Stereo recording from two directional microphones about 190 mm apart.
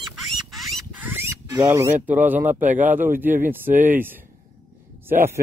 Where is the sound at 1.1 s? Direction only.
10° right (ahead or behind).